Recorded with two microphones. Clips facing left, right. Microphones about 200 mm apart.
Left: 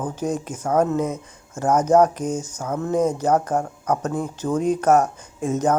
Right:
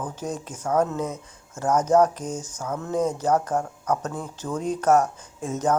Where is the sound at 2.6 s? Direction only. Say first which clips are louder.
Left 3 dB; 45° left (ahead or behind).